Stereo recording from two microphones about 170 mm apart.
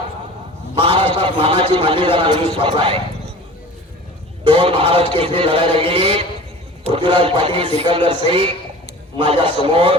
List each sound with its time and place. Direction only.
0.8 s a man's voice: 30° right (ahead or behind)
4.4 s a man's voice: 30° right (ahead or behind)